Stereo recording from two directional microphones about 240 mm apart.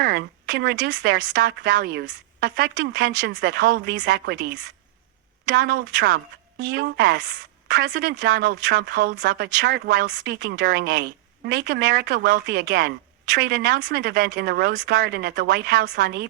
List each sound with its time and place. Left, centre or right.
0.0 s speech: right
5.5 s speech: right